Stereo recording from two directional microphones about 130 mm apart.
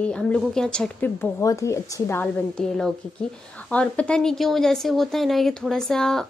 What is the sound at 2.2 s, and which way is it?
A woman's voice, 5° left (ahead or behind).